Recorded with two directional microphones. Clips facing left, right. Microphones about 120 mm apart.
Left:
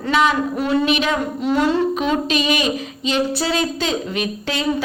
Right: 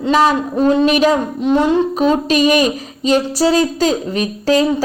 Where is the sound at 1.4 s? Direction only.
20° right (ahead or behind).